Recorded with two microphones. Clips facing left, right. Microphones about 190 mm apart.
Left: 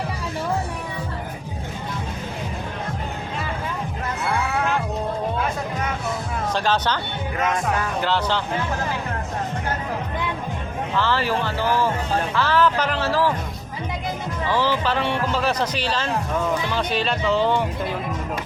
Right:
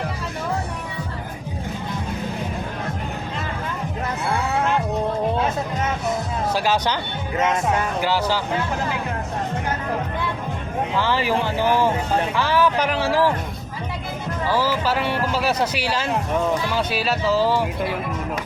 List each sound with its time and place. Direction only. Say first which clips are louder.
6.5 s speech: even; 10° right (ahead or behind)
8.0 s speech: even; 10° right (ahead or behind)
10.9 s speech: even; 15° right (ahead or behind)
14.5 s speech: even; 5° right (ahead or behind)